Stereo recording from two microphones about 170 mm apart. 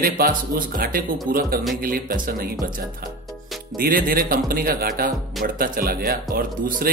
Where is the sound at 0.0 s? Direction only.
55° right (ahead or behind).